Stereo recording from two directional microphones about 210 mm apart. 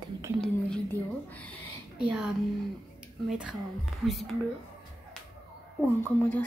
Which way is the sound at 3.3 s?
5° right (ahead or behind).